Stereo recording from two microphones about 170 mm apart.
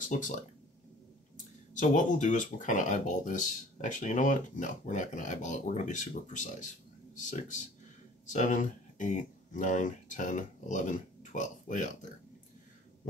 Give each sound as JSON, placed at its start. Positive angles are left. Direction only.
{"t": 0.0, "sound": "speech", "side_deg": 50}
{"t": 1.7, "sound": "speech", "side_deg": 50}